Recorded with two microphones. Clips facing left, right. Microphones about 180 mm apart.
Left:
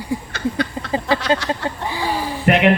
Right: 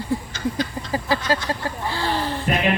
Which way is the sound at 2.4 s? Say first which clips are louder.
Left 8 dB; 70° left (ahead or behind).